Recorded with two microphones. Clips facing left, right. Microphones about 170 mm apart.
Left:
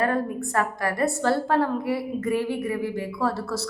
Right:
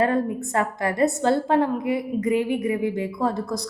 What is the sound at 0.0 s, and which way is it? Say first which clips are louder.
A woman's voice: right 3 dB; 25° right (ahead or behind).